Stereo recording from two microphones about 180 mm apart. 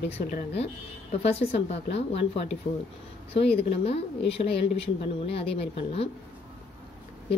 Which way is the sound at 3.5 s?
65° left (ahead or behind).